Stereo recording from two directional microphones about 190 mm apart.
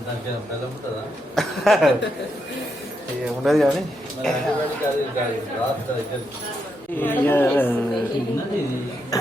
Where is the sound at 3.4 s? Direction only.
Centre (ahead or behind).